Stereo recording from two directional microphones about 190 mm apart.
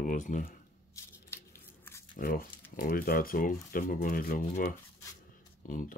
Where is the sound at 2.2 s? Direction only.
50° left (ahead or behind).